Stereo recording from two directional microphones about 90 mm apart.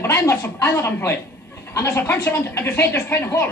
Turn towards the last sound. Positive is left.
turn(degrees=25)  # may be behind; listen again after turning